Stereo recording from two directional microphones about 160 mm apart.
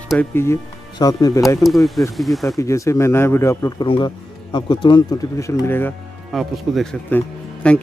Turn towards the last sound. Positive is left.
turn(degrees=10)  # may be behind; listen again after turning